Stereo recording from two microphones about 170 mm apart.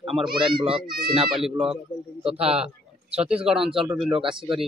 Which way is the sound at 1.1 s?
5° right (ahead or behind).